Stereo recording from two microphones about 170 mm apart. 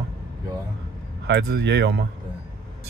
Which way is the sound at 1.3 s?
80° right.